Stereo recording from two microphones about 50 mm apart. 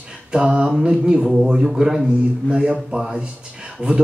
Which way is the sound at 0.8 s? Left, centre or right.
Centre.